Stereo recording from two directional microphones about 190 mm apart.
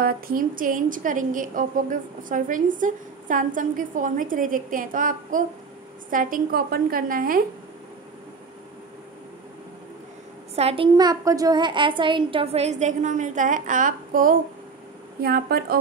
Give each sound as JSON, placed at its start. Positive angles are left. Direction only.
{"t": 0.0, "sound": "a woman's voice", "side_deg": -50}
{"t": 10.5, "sound": "a woman's voice", "side_deg": -30}